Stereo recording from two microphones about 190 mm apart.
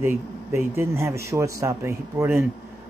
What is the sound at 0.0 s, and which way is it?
A man's voice, 15° right (ahead or behind).